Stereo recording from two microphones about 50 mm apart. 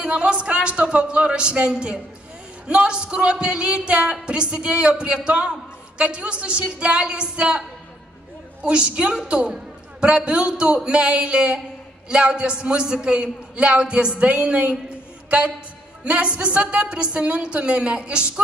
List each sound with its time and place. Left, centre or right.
0.0 s speech: right
8.6 s a woman's voice: centre